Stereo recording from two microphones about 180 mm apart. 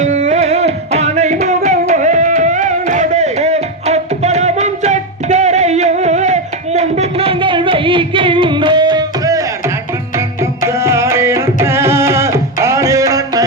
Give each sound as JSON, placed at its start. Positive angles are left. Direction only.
{"t": 0.0, "sound": "music", "side_deg": -40}